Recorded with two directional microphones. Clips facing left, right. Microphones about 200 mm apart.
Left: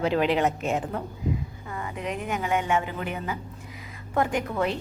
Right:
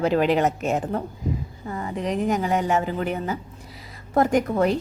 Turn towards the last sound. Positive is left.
turn(degrees=-40)  # may be behind; listen again after turning